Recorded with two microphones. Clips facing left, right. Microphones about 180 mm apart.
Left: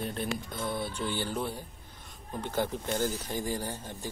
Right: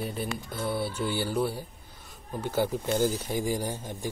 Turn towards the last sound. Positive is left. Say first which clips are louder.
# right 4 dB
turn(degrees=-15)  # may be behind; listen again after turning